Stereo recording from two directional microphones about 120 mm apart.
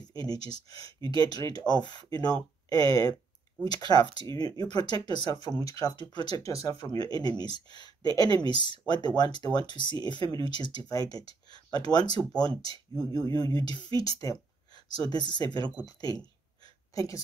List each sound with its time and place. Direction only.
0.5 s a woman's voice: 30° left (ahead or behind)